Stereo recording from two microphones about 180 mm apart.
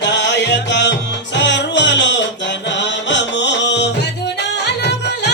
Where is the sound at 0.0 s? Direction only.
80° left.